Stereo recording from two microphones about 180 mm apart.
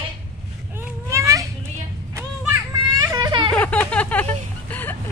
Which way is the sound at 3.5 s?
5° left (ahead or behind).